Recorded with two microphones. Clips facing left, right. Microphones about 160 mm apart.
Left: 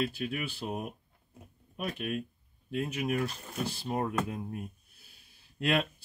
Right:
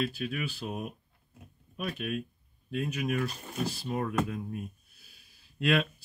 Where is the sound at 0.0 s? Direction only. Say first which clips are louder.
Even; 25° left (ahead or behind).